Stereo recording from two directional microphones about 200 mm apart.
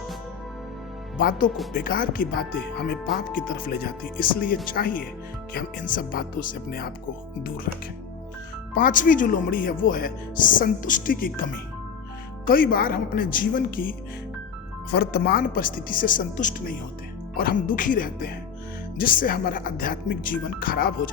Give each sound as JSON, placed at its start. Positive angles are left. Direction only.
{"t": 1.2, "sound": "speech", "side_deg": 45}
{"t": 8.7, "sound": "speech", "side_deg": 45}
{"t": 12.5, "sound": "speech", "side_deg": 45}